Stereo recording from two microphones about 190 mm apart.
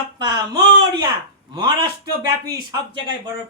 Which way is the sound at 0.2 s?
20° right (ahead or behind).